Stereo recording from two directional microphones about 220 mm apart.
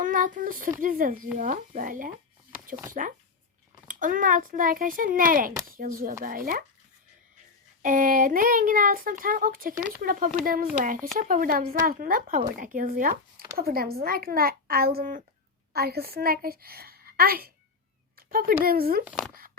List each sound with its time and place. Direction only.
0.0 s speech: 35° right (ahead or behind)
7.8 s a child's voice: 35° right (ahead or behind)
18.2 s a sound: 40° right (ahead or behind)
18.6 s speech: 40° right (ahead or behind)
19.0 s speech: centre (ahead or behind)